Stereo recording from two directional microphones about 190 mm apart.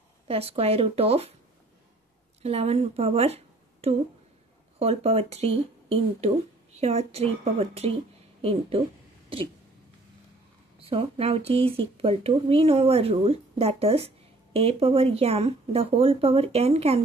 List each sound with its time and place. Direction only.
0.3 s speech: 30° right (ahead or behind)
2.4 s a woman's voice: 30° right (ahead or behind)
10.8 s speech: 30° right (ahead or behind)